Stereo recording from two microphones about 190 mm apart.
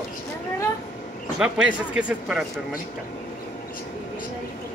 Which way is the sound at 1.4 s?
5° right (ahead or behind).